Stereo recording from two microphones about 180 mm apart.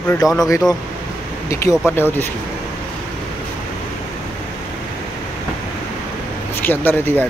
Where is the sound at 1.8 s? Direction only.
10° left (ahead or behind).